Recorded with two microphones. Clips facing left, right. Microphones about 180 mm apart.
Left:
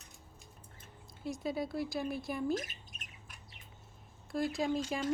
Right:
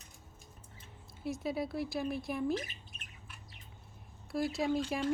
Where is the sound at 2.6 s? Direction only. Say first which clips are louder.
Even; 40° left (ahead or behind).